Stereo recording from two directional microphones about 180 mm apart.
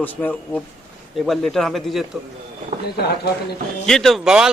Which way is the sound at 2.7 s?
40° right (ahead or behind).